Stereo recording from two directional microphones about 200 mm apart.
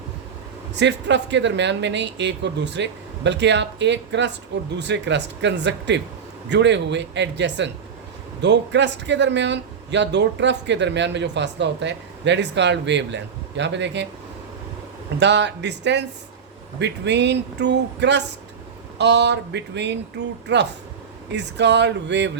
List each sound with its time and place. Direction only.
0.8 s speech: 60° right (ahead or behind)
15.2 s speech: 60° right (ahead or behind)